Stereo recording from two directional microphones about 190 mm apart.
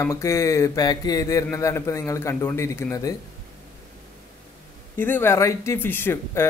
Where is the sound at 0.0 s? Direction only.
15° left (ahead or behind).